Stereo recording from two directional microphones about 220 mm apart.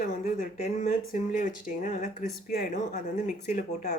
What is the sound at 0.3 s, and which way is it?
Speech, 30° left (ahead or behind).